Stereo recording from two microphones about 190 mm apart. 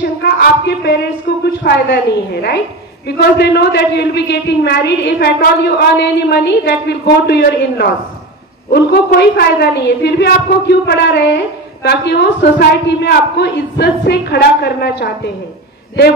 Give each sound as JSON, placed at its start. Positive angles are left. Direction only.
{"t": 0.2, "sound": "speech", "side_deg": 60}
{"t": 1.4, "sound": "a sound", "side_deg": 60}
{"t": 3.2, "sound": "a woman's voice", "side_deg": 60}